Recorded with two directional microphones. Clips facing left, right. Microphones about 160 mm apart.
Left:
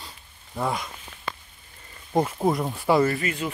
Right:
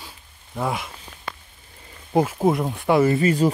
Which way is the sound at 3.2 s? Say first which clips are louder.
Right 10 dB; 35° right (ahead or behind).